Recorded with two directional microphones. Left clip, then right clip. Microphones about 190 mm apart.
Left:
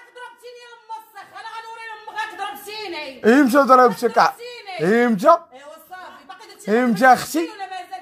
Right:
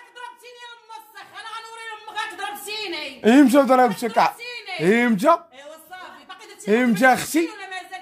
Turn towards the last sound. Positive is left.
turn(degrees=-5)  # may be behind; listen again after turning